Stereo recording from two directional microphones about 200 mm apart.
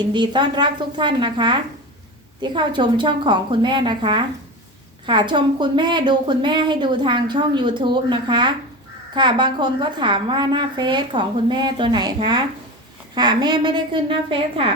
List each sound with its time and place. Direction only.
0.1 s a woman's voice: 20° right (ahead or behind)